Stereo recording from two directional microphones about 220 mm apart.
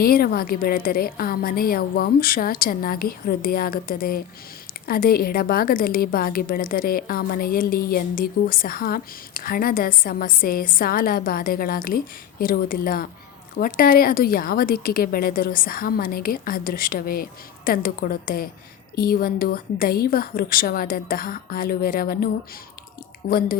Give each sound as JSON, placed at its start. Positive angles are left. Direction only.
{"t": 0.0, "sound": "a woman's voice", "side_deg": 45}